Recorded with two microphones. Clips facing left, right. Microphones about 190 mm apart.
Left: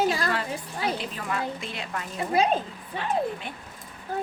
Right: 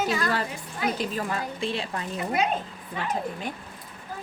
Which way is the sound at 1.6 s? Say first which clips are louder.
Right 5 dB; 30° right (ahead or behind).